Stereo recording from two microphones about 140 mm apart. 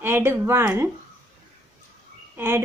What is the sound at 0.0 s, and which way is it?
Speech, 15° right (ahead or behind).